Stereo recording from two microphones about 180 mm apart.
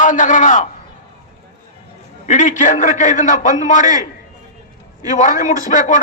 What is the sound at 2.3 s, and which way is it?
A man's voice, 45° left (ahead or behind).